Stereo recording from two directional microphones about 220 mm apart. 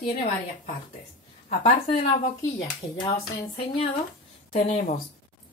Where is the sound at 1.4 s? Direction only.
30° left (ahead or behind).